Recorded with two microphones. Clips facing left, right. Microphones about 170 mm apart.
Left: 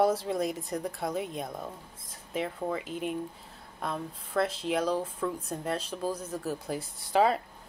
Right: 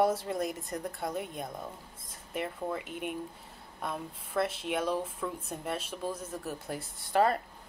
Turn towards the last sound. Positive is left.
turn(degrees=0)  # may be behind; listen again after turning